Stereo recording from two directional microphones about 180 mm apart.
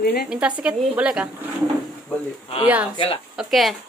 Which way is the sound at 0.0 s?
60° left (ahead or behind).